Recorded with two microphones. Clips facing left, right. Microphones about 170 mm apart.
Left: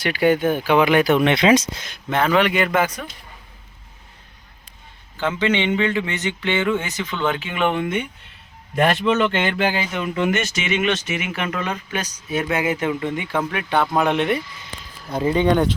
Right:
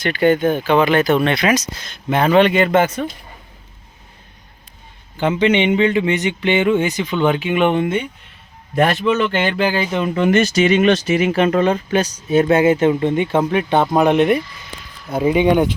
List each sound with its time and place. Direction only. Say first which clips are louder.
0.0 s speech: right 3 dB; 10° left (ahead or behind); by 1.7 s 25° left (ahead or behind)
2.0 s speech: right 4 dB; 15° right (ahead or behind)
2.3 s speech: right 7 dB; 25° right (ahead or behind)
5.1 s speech: right 5 dB; 15° right (ahead or behind)
9.4 s speech: right 3 dB; 35° right (ahead or behind); by 15.7 s 10° right (ahead or behind)